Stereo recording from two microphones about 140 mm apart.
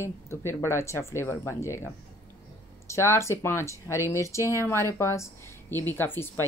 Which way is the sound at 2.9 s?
20° left (ahead or behind).